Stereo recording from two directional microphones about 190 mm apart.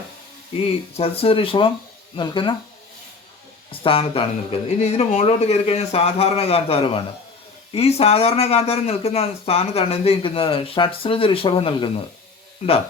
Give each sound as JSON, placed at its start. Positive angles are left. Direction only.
{"t": 0.9, "sound": "speech", "side_deg": 30}
{"t": 3.7, "sound": "speech", "side_deg": 30}